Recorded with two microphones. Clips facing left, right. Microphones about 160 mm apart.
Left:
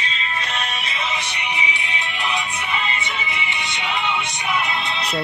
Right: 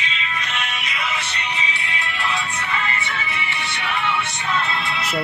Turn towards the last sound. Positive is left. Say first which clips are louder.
# even
turn(degrees=20)  # may be behind; listen again after turning